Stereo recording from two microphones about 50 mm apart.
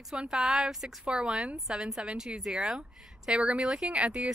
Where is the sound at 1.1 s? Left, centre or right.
Centre.